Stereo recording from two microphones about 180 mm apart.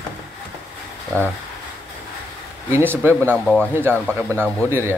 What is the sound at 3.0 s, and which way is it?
Speech, 10° right (ahead or behind).